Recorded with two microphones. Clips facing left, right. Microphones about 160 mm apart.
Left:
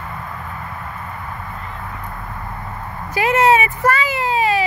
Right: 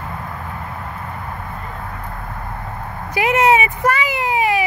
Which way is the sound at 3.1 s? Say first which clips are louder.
Even; 15° right (ahead or behind).